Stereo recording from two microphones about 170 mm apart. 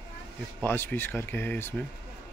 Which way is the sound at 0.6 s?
10° left (ahead or behind).